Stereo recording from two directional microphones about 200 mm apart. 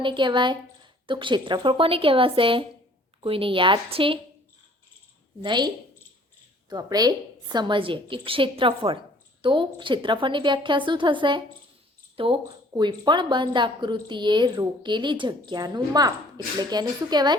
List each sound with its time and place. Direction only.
0.0 s speech: 25° right (ahead or behind)
5.4 s speech: 20° right (ahead or behind)